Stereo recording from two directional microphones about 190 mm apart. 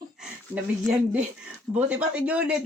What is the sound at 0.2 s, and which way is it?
A man's voice, 5° right (ahead or behind).